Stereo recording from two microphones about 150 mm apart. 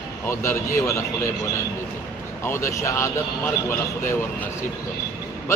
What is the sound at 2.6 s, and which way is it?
Speech, 20° left (ahead or behind).